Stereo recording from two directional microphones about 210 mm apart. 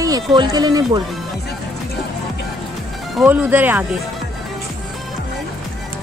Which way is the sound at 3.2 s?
10° right (ahead or behind).